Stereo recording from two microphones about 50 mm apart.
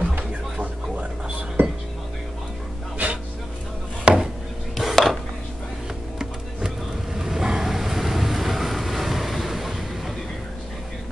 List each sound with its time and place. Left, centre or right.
0.1 s music: right
3.0 s music: right
4.0 s chopping: centre
4.7 s a sound: centre
7.2 s vehicle: centre